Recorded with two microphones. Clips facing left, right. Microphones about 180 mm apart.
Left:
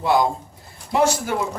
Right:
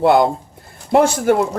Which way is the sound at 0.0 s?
60° right (ahead or behind).